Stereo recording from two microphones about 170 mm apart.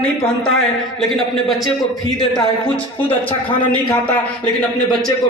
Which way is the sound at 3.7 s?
5° left (ahead or behind).